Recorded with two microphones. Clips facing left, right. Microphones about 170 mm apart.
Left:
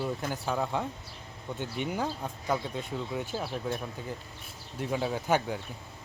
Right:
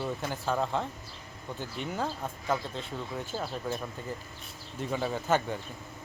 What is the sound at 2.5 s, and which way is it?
Speech, 10° left (ahead or behind).